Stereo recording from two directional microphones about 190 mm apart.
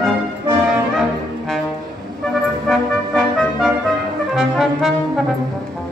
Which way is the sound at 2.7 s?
Centre (ahead or behind).